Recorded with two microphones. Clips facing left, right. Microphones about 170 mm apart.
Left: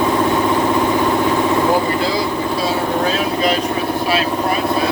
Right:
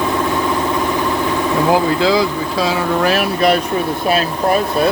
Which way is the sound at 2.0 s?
90° right.